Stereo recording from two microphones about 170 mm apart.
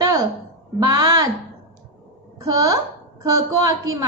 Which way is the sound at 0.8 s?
20° right (ahead or behind).